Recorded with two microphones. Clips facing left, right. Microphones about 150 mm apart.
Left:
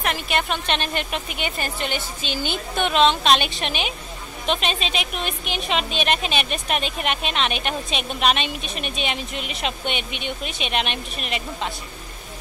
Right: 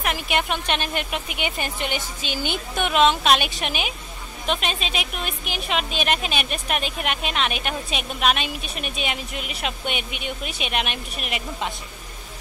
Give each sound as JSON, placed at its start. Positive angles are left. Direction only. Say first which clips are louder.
{"t": 0.0, "sound": "a woman's voice", "louder": "even", "side_deg": -15}